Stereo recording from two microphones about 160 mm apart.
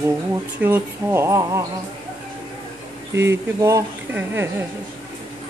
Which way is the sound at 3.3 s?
20° right (ahead or behind).